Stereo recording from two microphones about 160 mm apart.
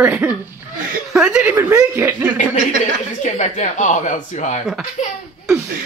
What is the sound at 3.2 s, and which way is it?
Speech, 50° left (ahead or behind).